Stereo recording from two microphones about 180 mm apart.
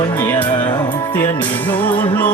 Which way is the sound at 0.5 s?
25° left (ahead or behind).